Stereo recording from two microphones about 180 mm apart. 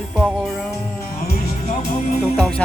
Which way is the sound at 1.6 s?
45° left (ahead or behind).